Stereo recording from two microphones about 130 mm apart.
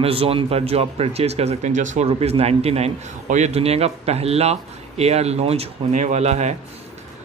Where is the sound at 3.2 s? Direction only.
65° right (ahead or behind).